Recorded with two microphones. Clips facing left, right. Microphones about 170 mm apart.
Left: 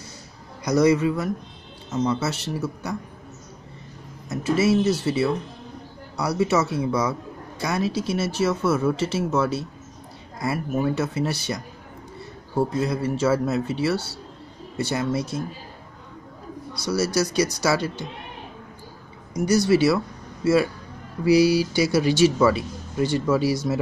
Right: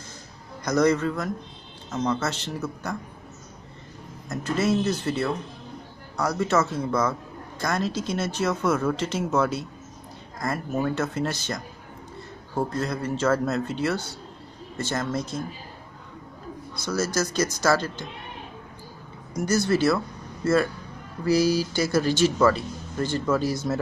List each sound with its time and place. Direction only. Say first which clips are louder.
0.7 s speech: left 3 dB; 10° left (ahead or behind)
4.3 s speech: left 4 dB; 5° left (ahead or behind)
17.0 s speech: left 3 dB; 10° left (ahead or behind)
19.3 s speech: left 4 dB; 10° left (ahead or behind)
21.2 s speech: left 4 dB; 10° left (ahead or behind)